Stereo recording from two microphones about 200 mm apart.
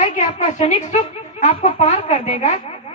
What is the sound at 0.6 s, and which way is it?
A woman's voice, 35° left (ahead or behind).